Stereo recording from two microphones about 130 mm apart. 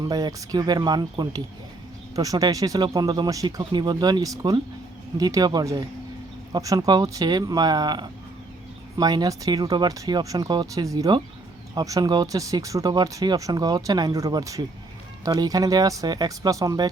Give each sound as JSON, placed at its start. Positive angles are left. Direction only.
{"t": 0.0, "sound": "speech", "side_deg": -30}